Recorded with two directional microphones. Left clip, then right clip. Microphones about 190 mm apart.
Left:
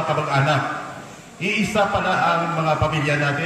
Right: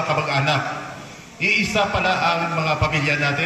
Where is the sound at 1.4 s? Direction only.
60° left (ahead or behind).